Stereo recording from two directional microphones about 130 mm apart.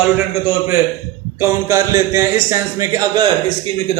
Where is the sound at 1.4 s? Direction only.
20° right (ahead or behind).